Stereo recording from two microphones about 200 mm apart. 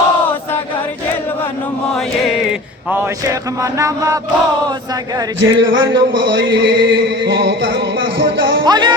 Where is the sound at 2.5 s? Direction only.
5° right (ahead or behind).